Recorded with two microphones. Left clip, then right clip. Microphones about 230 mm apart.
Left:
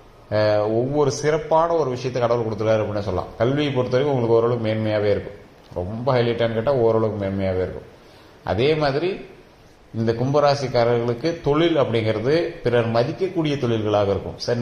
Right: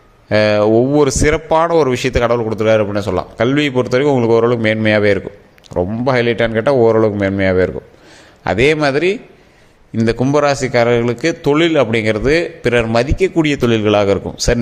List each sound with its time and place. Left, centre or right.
0.3 s a man's voice: right